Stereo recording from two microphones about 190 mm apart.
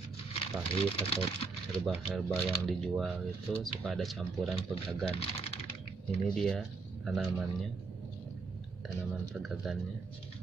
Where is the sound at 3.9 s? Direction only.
Centre (ahead or behind).